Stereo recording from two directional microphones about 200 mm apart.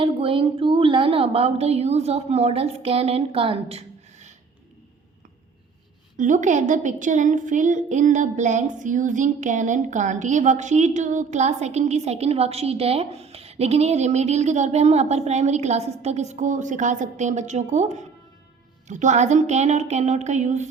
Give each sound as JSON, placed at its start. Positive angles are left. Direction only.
{"t": 0.0, "sound": "speech", "side_deg": -25}
{"t": 6.1, "sound": "a woman's voice", "side_deg": -40}